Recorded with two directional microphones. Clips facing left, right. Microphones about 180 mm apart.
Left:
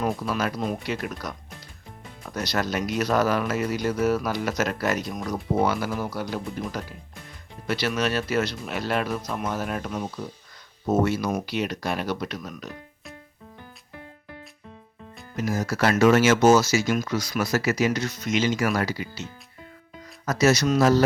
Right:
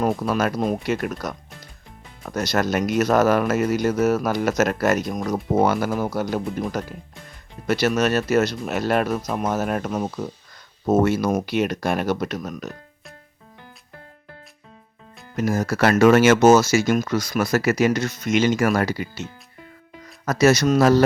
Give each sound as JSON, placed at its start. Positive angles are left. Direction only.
{"t": 0.0, "sound": "speech", "side_deg": -50}
{"t": 15.4, "sound": "speech", "side_deg": -55}
{"t": 20.2, "sound": "speech", "side_deg": -60}